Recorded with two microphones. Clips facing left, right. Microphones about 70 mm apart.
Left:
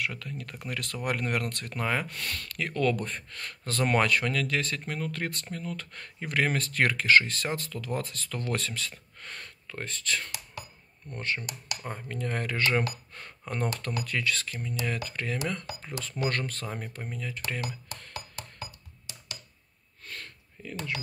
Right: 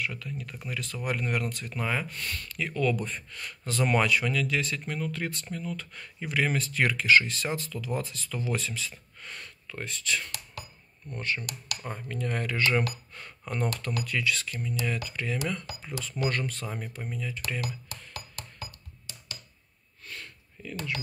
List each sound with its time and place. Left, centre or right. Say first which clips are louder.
0.0 s speech: even; left
11.4 s speech: even; left
12.1 s speech: right 1 dB; left
17.6 s speech: even; left
18.1 s music: left 2 dB; centre
20.1 s a sound: even; left